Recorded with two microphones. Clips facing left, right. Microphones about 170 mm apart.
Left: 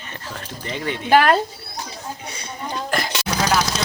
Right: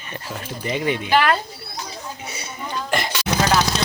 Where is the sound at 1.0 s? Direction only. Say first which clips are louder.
Left 5 dB; 45° left (ahead or behind).